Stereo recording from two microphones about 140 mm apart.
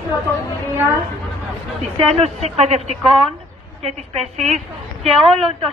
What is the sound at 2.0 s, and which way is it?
A woman's voice, 50° right (ahead or behind).